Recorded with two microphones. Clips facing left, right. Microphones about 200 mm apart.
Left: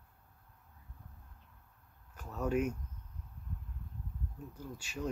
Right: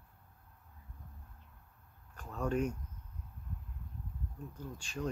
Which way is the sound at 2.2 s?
5° left (ahead or behind).